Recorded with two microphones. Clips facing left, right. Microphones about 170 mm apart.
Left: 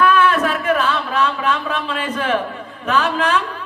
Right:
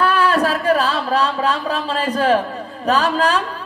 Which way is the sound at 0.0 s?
35° right (ahead or behind).